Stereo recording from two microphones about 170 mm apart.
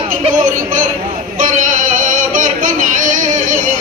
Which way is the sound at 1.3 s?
50° right (ahead or behind).